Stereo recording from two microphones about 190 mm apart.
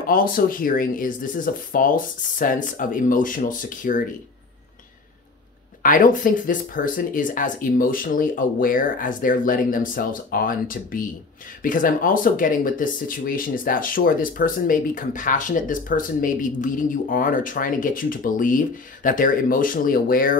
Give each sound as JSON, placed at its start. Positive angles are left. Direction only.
{"t": 0.0, "sound": "speech", "side_deg": 50}
{"t": 5.8, "sound": "speech", "side_deg": 45}